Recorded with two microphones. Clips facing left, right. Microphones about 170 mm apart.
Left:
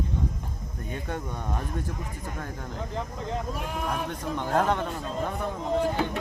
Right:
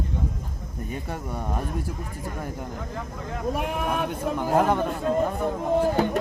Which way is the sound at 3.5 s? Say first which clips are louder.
Right 4 dB; 60° right (ahead or behind).